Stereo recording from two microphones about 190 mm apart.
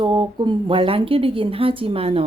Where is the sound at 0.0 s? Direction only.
25° right (ahead or behind).